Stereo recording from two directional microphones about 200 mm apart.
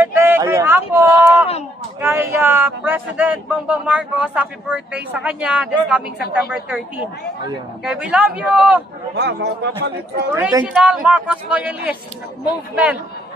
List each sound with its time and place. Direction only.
0.0 s a sound: 10° right (ahead or behind)
2.0 s a man's voice: 10° right (ahead or behind)
9.1 s speech: 55° right (ahead or behind)
10.3 s speech: 15° right (ahead or behind)
10.7 s speech: 5° right (ahead or behind)